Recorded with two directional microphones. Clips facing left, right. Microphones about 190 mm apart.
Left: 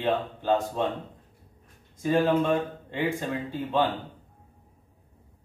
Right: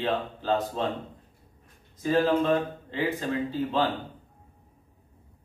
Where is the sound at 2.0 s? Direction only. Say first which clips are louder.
Even; 10° left (ahead or behind).